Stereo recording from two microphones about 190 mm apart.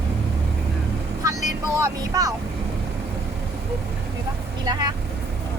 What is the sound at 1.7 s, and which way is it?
Speech, 15° right (ahead or behind).